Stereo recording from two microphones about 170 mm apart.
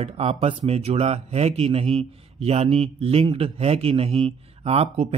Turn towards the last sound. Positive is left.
turn(degrees=-35)  # may be behind; listen again after turning